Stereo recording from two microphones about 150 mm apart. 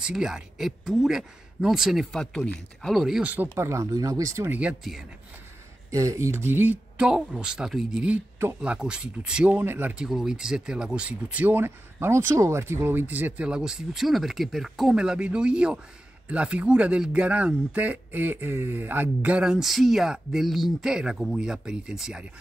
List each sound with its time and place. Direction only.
0.0 s speech: 5° right (ahead or behind)
3.5 s speech: 20° right (ahead or behind)
4.6 s speech: 5° right (ahead or behind)
5.9 s speech: 20° right (ahead or behind); by 22.2 s 5° right (ahead or behind)